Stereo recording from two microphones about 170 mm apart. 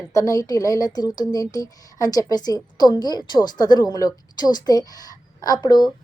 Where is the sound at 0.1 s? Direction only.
20° left (ahead or behind).